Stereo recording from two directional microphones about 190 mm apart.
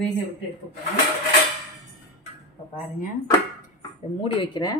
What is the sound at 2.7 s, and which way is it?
Speech, 40° left (ahead or behind).